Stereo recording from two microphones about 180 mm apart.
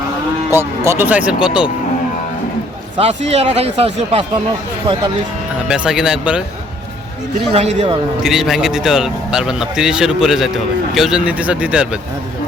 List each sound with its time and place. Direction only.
0.5 s speech: 10° right (ahead or behind)
3.0 s speech: 35° right (ahead or behind)
5.5 s a man's voice: 5° right (ahead or behind)
7.3 s speech: 35° right (ahead or behind)
8.2 s a man's voice: centre (ahead or behind)